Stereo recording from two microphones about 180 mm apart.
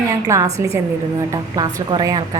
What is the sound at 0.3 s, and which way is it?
A woman's voice, 15° right (ahead or behind).